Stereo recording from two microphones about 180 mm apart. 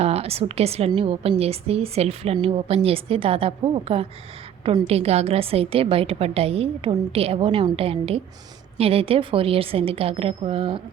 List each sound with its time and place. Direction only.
0.0 s a woman's voice: 35° right (ahead or behind)